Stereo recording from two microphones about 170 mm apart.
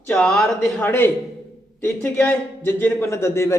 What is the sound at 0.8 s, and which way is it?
A man's voice, 15° left (ahead or behind).